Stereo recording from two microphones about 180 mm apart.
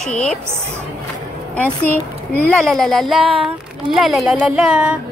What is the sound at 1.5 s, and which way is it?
A woman's voice, 10° left (ahead or behind).